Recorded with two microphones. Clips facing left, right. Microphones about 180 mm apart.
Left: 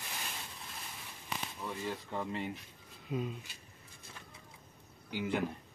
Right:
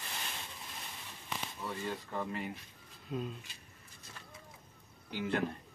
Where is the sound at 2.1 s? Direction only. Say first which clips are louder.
Even; 20° left (ahead or behind).